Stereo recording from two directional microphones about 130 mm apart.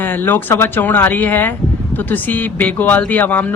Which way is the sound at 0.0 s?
15° left (ahead or behind).